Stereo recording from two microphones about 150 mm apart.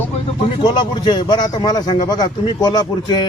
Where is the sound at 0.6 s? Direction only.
30° left (ahead or behind).